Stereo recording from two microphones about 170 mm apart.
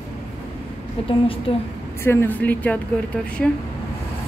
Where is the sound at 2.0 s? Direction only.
10° left (ahead or behind).